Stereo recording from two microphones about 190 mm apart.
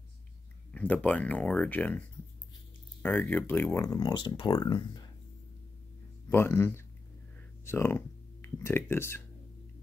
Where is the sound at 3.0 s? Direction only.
10° left (ahead or behind).